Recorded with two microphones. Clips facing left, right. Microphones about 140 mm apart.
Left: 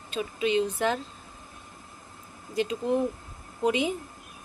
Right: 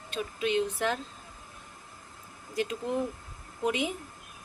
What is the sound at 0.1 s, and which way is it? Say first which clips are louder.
Speech: left 3 dB; centre (ahead or behind).